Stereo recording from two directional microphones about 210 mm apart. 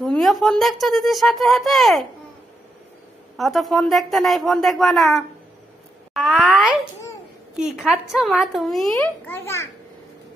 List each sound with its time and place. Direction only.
0.0 s speech: centre (ahead or behind)
3.3 s speech: centre (ahead or behind)
7.8 s speech: centre (ahead or behind)
8.9 s a child's voice: 10° left (ahead or behind)